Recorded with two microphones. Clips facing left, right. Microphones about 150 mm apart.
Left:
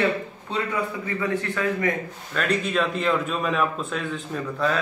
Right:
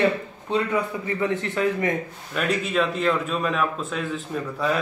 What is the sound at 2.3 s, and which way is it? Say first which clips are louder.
Speech: even; 5° right (ahead or behind).